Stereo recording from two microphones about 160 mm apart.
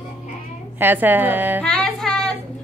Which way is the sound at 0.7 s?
10° right (ahead or behind).